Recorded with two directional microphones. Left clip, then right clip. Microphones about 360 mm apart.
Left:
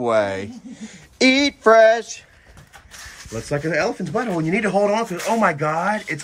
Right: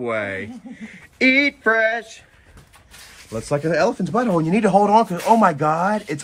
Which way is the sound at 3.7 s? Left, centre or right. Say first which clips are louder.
Right 3 dB; centre.